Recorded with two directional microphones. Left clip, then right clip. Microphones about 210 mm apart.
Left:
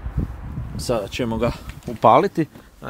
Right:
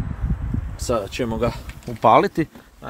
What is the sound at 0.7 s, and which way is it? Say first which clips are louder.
Speech: even; 5° left (ahead or behind).